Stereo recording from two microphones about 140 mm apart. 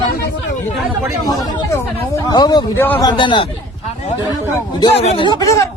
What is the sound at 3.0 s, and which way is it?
Speech, 35° left (ahead or behind).